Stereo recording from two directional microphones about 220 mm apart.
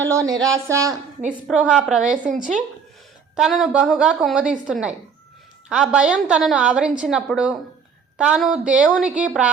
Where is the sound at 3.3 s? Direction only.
Centre (ahead or behind).